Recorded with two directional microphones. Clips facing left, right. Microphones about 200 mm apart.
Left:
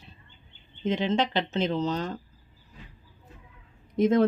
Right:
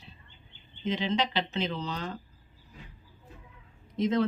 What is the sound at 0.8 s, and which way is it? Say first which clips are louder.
Speech: left 4 dB; 50° left (ahead or behind).